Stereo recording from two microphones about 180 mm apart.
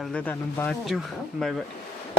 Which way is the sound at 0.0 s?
5° left (ahead or behind).